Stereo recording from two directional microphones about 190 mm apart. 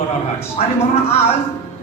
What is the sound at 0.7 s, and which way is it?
Speech, 30° left (ahead or behind).